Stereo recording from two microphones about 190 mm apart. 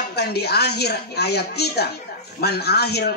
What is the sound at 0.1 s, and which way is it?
Speech, 60° left (ahead or behind).